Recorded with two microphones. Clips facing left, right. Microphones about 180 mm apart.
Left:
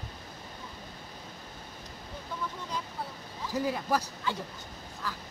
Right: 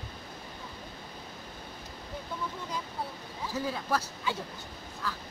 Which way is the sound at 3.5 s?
15° left (ahead or behind).